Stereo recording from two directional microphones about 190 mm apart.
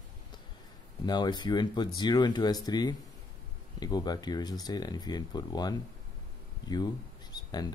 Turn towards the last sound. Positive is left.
turn(degrees=20)  # may be behind; listen again after turning